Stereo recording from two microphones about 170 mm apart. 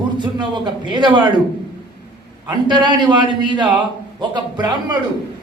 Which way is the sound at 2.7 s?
25° right (ahead or behind).